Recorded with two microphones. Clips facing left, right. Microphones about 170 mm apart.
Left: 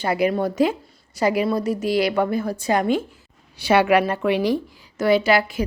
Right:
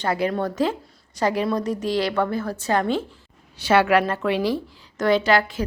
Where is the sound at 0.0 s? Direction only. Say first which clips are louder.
Left 3 dB; 10° left (ahead or behind).